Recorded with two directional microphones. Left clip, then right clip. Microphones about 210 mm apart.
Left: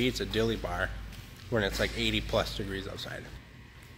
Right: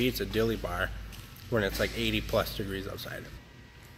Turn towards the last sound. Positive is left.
turn(degrees=-10)  # may be behind; listen again after turning